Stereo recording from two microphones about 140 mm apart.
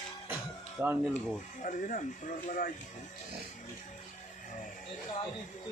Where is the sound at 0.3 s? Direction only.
15° right (ahead or behind).